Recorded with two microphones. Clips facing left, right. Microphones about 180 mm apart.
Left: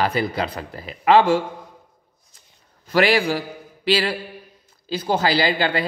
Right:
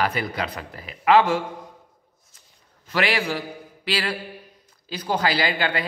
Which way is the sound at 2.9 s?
35° left (ahead or behind).